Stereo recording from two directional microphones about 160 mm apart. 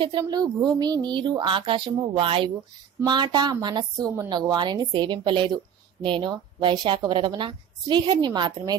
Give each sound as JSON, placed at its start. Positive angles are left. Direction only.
{"t": 0.0, "sound": "a woman's voice", "side_deg": -25}